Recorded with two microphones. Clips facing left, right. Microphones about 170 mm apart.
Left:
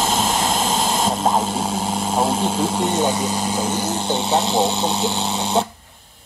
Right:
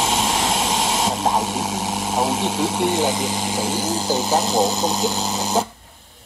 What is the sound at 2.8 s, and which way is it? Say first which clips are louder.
Speech: right 1 dB; 10° right (ahead or behind).